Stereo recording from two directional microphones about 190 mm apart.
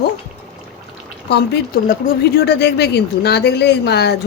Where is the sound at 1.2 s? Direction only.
60° left (ahead or behind).